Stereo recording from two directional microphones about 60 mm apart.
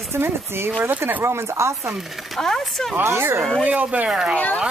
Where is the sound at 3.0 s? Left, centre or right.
Right.